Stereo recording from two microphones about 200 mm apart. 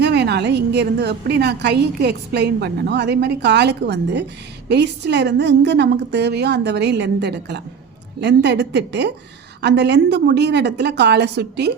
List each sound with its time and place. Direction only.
0.0 s a woman's voice: 55° right (ahead or behind)